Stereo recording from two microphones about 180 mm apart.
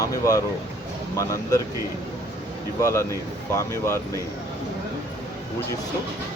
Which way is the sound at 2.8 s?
15° left (ahead or behind).